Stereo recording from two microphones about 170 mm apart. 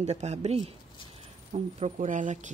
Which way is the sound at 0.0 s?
40° right (ahead or behind).